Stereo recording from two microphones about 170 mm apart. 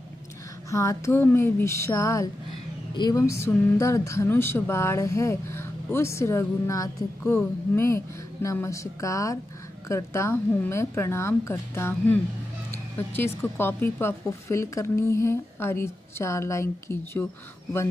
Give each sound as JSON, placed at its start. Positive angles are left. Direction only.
{"t": 0.7, "sound": "speech", "side_deg": 20}